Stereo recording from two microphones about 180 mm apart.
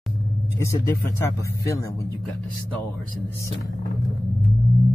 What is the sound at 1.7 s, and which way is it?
Speech, 15° left (ahead or behind).